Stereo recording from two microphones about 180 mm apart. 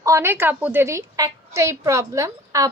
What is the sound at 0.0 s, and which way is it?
A woman's voice, 15° right (ahead or behind).